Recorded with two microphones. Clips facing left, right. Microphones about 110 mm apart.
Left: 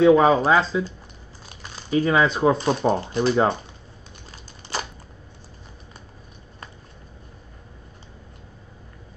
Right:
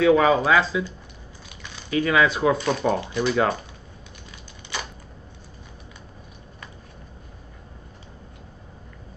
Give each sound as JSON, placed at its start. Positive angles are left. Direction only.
{"t": 0.0, "sound": "speech", "side_deg": 30}